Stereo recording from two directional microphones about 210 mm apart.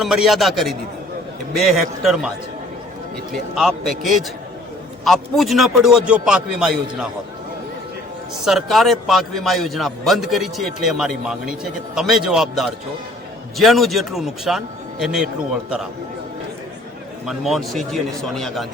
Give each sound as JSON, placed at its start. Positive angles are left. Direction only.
{"t": 0.0, "sound": "a man's voice", "side_deg": 0}
{"t": 3.3, "sound": "a man's voice", "side_deg": 0}
{"t": 8.4, "sound": "a man's voice", "side_deg": 0}
{"t": 17.2, "sound": "a man's voice", "side_deg": 0}